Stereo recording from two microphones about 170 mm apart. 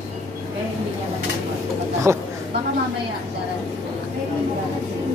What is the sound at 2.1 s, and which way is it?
Speech, 15° right (ahead or behind).